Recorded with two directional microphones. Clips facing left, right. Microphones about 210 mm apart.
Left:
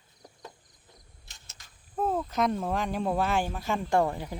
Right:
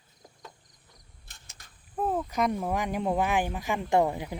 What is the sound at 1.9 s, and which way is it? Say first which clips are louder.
Speech: even; 5° right (ahead or behind).